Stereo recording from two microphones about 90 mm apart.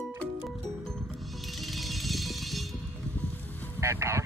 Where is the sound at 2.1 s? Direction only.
Centre (ahead or behind).